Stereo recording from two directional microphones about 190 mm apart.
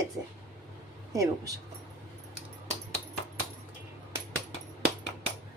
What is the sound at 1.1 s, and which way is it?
Speech, 15° right (ahead or behind).